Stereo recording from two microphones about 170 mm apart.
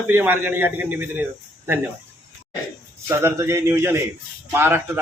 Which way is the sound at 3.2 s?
15° right (ahead or behind).